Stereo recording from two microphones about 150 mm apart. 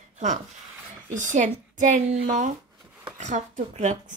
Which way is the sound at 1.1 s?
55° right (ahead or behind).